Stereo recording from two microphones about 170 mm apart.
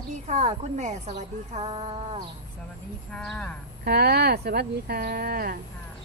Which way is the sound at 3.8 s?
70° right (ahead or behind).